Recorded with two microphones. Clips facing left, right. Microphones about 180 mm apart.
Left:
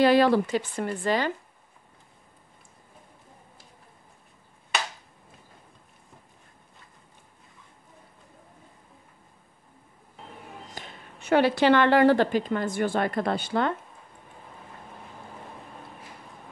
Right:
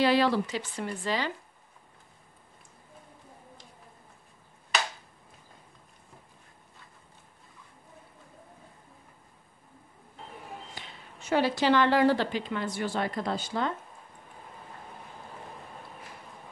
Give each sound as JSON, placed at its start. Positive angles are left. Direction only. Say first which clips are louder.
{"t": 0.0, "sound": "speech", "louder": "left 5 dB", "side_deg": 50}
{"t": 10.7, "sound": "speech", "louder": "left 3 dB", "side_deg": 50}